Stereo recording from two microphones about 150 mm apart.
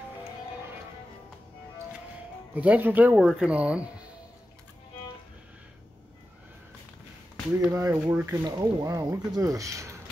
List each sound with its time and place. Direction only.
2.5 s speech: 10° right (ahead or behind)
7.7 s speech: 20° right (ahead or behind)
8.5 s speech: 25° right (ahead or behind)